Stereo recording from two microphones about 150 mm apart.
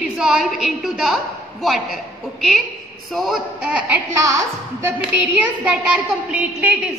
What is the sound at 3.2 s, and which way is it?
A woman's voice, centre (ahead or behind).